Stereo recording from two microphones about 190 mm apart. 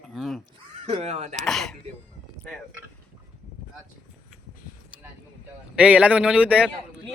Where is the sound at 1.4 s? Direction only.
Centre (ahead or behind).